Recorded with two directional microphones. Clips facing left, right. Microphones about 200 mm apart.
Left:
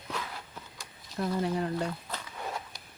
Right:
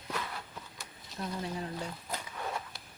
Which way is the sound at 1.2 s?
60° left (ahead or behind).